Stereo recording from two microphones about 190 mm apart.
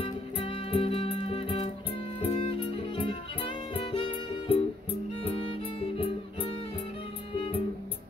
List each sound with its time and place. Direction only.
0.0 s music: 30° left (ahead or behind)